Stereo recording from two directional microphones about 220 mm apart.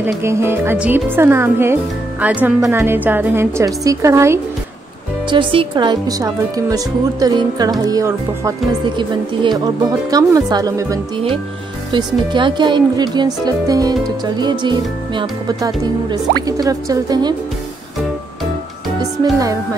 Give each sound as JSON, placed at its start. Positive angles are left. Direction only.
{"t": 0.0, "sound": "speech", "side_deg": -10}
{"t": 5.3, "sound": "speech", "side_deg": -25}
{"t": 19.3, "sound": "speech", "side_deg": -15}